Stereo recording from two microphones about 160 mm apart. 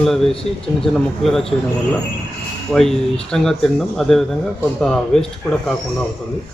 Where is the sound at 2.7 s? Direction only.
Centre (ahead or behind).